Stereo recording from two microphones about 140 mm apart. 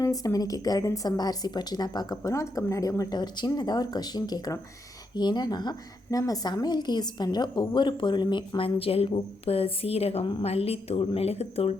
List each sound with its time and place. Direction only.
0.0 s a woman's voice: 25° left (ahead or behind); by 11.7 s 45° left (ahead or behind)